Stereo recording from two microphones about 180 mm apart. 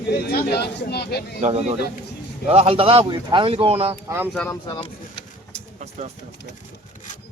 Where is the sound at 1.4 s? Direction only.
35° right (ahead or behind).